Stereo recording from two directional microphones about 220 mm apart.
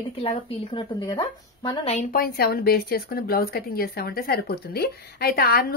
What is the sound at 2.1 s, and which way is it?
A woman's voice, 45° left (ahead or behind).